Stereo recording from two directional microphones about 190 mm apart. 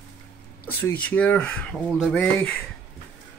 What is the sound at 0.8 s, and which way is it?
Speech, 10° left (ahead or behind).